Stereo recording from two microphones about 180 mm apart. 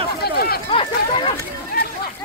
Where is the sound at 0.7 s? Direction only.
30° left (ahead or behind).